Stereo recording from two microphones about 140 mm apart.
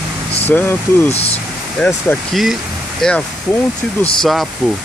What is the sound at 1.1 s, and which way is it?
Speech, 45° left (ahead or behind).